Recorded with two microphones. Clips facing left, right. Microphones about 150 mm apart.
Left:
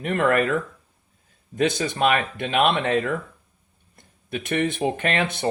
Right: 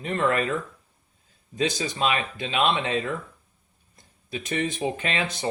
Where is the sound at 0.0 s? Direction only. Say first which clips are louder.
Left 4 dB; 60° left (ahead or behind).